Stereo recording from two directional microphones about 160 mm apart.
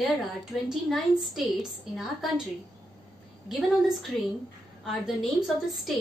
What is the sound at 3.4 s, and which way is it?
A woman's voice, centre (ahead or behind).